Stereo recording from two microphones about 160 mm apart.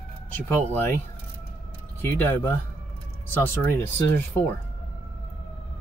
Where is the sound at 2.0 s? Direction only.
15° left (ahead or behind).